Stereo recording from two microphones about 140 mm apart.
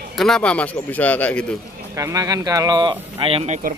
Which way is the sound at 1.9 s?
25° right (ahead or behind).